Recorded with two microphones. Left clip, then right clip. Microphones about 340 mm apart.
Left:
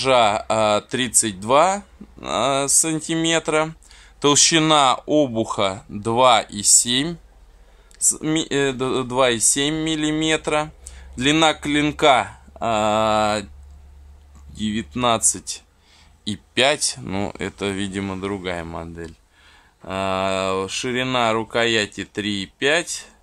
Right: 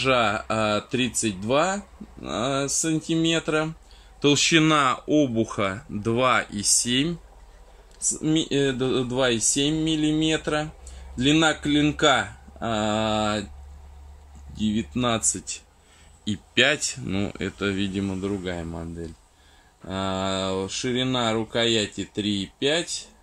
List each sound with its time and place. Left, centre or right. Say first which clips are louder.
0.0 s speech: left 5 dB; centre
14.5 s speech: left 1 dB; left
18.6 s speech: left 4 dB; left
19.9 s speech: left 5 dB; left